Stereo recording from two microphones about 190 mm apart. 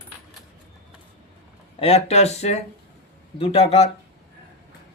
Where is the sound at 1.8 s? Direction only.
30° left (ahead or behind).